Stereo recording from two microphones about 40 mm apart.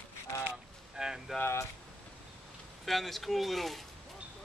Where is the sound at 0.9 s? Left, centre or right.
Centre.